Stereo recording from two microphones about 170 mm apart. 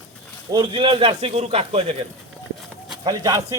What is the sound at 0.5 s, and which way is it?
Speech, 30° right (ahead or behind).